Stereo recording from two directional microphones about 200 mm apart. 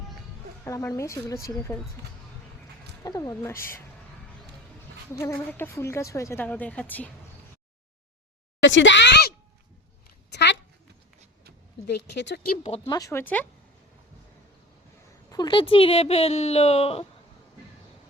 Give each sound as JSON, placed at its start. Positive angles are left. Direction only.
{"t": 0.6, "sound": "speech", "side_deg": 15}
{"t": 3.0, "sound": "speech", "side_deg": 15}
{"t": 5.2, "sound": "speech", "side_deg": 15}
{"t": 8.6, "sound": "a woman's voice", "side_deg": 65}
{"t": 10.2, "sound": "a sound", "side_deg": 60}
{"t": 11.9, "sound": "speech", "side_deg": 60}
{"t": 12.6, "sound": "speech", "side_deg": 30}
{"t": 13.0, "sound": "speech", "side_deg": 15}
{"t": 15.3, "sound": "speech", "side_deg": 20}